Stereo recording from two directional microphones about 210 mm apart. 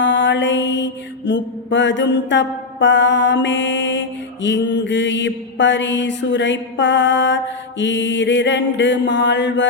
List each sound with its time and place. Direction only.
0.0 s mantra: 60° left (ahead or behind)